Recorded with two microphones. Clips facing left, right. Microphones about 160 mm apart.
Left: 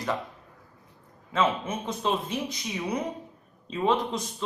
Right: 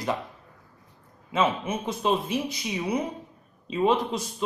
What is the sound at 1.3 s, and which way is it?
Speech, 10° right (ahead or behind).